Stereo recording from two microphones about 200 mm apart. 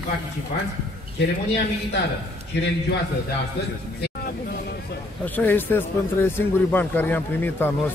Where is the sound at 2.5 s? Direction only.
60° left (ahead or behind).